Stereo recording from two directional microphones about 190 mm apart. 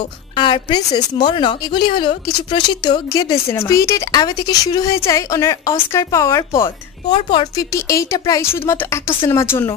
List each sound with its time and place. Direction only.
0.4 s a woman's voice: 25° left (ahead or behind)